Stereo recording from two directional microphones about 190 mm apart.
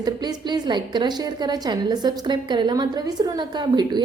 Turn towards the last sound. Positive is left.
turn(degrees=-25)  # may be behind; listen again after turning